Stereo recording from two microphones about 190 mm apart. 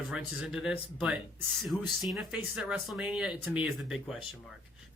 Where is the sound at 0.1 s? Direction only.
5° right (ahead or behind).